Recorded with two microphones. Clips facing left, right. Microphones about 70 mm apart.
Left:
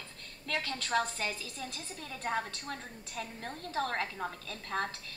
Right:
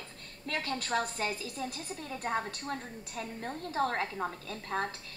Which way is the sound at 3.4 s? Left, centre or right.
Right.